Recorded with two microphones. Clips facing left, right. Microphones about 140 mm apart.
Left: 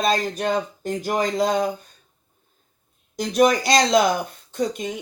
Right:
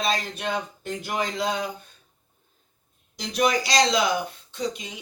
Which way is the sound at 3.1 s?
50° left (ahead or behind).